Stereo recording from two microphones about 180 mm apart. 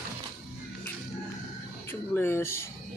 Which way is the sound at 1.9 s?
10° left (ahead or behind).